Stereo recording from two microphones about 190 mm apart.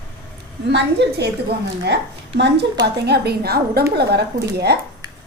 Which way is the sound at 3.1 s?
55° right (ahead or behind).